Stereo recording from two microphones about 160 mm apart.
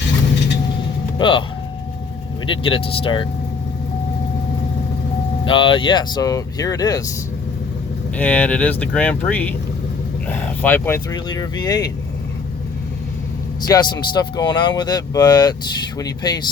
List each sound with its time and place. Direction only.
1.2 s speech: 30° left (ahead or behind)
2.5 s speech: 35° left (ahead or behind)
5.5 s speech: 30° left (ahead or behind)
8.1 s speech: 10° left (ahead or behind)
11.1 s speech: 25° left (ahead or behind)
13.6 s speech: 25° left (ahead or behind)